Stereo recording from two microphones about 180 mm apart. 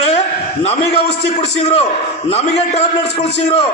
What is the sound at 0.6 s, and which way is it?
A man's voice, 35° left (ahead or behind).